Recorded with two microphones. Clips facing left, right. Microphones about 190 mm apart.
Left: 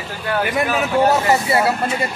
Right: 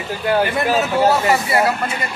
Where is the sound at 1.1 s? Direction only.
25° left (ahead or behind).